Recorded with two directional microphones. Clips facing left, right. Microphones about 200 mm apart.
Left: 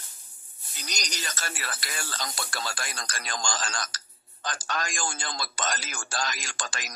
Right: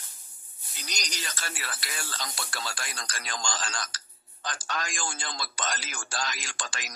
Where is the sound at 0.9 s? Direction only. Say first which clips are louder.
Left 2 dB; 45° left (ahead or behind).